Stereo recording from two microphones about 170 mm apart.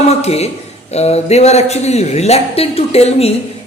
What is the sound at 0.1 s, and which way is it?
A man's voice, 40° left (ahead or behind).